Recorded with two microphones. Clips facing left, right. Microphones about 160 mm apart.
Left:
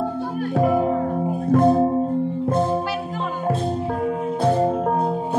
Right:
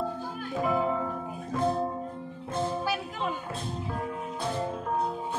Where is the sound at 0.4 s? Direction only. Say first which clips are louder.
Left 9 dB; 60° left (ahead or behind).